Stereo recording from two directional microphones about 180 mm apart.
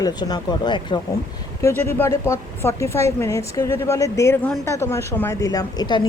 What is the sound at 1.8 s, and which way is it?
Speech, 10° left (ahead or behind).